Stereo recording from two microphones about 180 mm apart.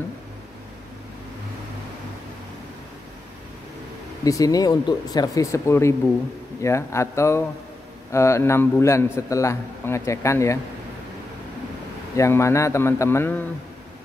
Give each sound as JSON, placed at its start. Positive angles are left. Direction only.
{"t": 4.2, "sound": "a man's voice", "side_deg": 20}
{"t": 12.2, "sound": "a man's voice", "side_deg": 15}